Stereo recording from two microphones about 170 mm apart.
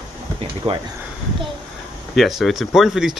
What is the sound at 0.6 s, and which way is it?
Speech, 35° right (ahead or behind).